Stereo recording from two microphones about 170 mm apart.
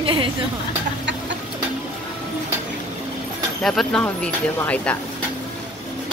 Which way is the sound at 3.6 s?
5° left (ahead or behind).